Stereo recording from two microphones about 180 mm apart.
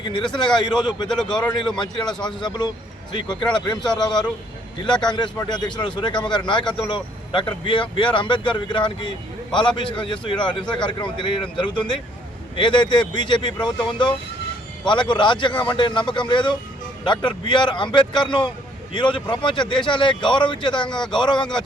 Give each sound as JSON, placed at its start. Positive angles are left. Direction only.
{"t": 0.0, "sound": "speech", "side_deg": 25}